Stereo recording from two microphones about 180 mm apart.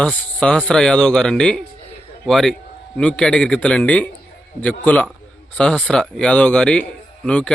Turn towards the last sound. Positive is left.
turn(degrees=5)  # may be behind; listen again after turning